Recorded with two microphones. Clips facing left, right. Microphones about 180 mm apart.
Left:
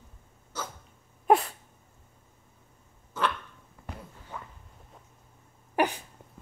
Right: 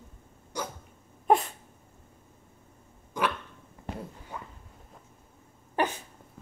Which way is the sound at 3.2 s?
15° right (ahead or behind).